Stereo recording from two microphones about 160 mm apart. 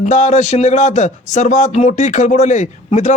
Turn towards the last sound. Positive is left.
turn(degrees=45)  # may be behind; listen again after turning